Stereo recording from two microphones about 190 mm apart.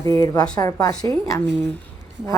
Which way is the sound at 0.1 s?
15° left (ahead or behind).